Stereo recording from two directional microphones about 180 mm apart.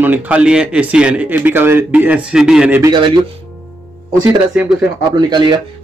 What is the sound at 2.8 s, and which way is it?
Speech, 25° right (ahead or behind).